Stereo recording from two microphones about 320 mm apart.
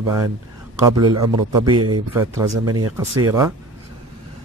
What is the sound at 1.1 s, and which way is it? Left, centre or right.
Speech, right.